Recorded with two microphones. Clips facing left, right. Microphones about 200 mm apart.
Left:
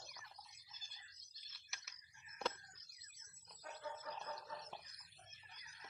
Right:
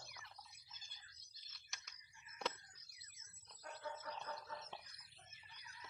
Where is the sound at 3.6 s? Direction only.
5° left (ahead or behind).